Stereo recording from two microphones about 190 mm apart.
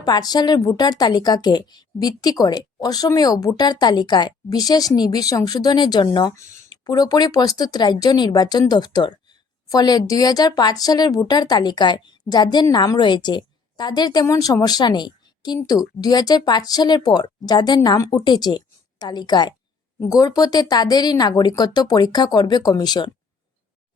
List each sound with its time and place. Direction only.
0.0 s speech: 20° left (ahead or behind)